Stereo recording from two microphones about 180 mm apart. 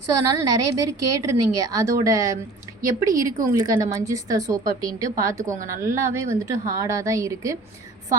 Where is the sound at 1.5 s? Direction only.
20° right (ahead or behind).